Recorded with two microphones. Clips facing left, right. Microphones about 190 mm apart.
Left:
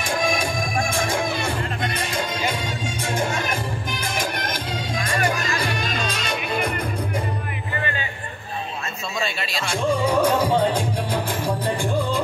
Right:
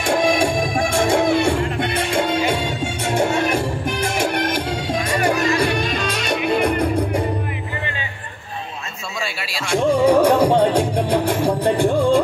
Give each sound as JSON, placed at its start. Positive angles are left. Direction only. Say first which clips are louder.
{"t": 0.0, "sound": "music", "louder": "right 6 dB", "side_deg": -70}
{"t": 5.6, "sound": "music", "louder": "right 6 dB", "side_deg": -70}
{"t": 9.7, "sound": "music", "louder": "right 7 dB", "side_deg": -70}